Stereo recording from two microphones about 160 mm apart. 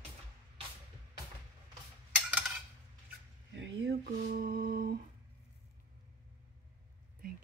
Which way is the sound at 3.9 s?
65° right (ahead or behind).